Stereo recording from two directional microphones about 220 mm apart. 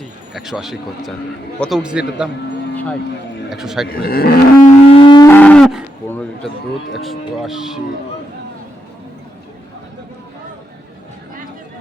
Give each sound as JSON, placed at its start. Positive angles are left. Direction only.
{"t": 0.3, "sound": "speech", "side_deg": 0}
{"t": 3.5, "sound": "speech", "side_deg": 0}
{"t": 3.9, "sound": "livestock", "side_deg": 45}
{"t": 4.9, "sound": "livestock", "side_deg": 20}
{"t": 5.3, "sound": "cattle", "side_deg": 5}
{"t": 6.9, "sound": "speech", "side_deg": 0}